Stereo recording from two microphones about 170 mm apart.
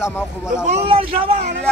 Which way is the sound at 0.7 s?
35° right (ahead or behind).